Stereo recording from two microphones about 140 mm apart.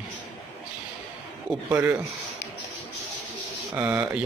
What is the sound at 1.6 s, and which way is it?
Speech, 15° right (ahead or behind).